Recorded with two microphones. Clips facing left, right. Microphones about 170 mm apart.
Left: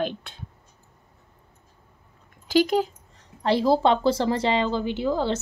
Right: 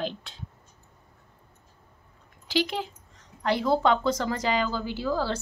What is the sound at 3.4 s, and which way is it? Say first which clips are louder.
Speech: left 4 dB; 30° left (ahead or behind).